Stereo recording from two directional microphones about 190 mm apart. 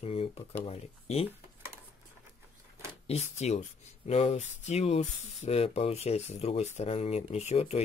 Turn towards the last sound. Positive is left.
turn(degrees=35)  # may be behind; listen again after turning